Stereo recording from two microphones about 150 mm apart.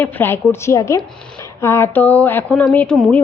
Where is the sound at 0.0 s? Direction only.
15° left (ahead or behind).